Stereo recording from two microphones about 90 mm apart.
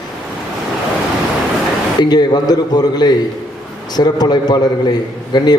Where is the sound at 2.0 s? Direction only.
50° left (ahead or behind).